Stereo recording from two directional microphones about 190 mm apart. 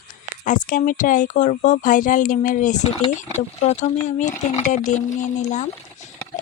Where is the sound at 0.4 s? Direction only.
45° left (ahead or behind).